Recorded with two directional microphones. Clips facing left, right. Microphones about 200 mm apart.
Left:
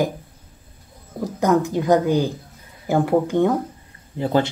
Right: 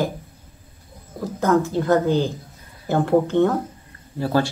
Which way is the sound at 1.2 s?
15° left (ahead or behind).